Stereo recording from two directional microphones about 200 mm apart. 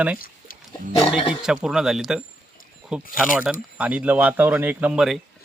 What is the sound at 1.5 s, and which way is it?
Speech, 5° right (ahead or behind).